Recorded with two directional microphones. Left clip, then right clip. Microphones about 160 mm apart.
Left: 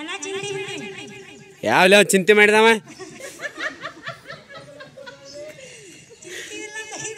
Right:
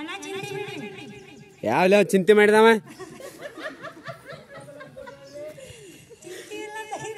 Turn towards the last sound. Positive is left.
turn(degrees=-35)  # may be behind; listen again after turning